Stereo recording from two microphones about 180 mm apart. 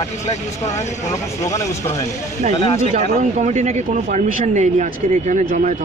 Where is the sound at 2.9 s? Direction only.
45° right (ahead or behind).